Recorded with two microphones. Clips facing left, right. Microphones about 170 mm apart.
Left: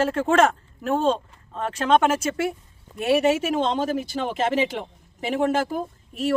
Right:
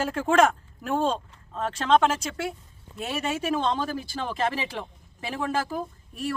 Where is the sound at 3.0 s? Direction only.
70° left (ahead or behind).